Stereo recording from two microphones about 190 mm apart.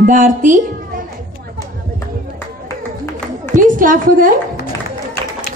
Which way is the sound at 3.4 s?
45° right (ahead or behind).